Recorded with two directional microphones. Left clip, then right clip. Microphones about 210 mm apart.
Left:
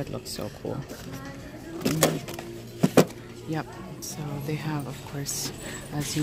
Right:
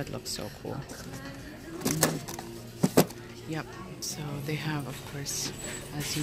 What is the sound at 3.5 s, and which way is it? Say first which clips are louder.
Speech: left 4 dB; 15° left (ahead or behind).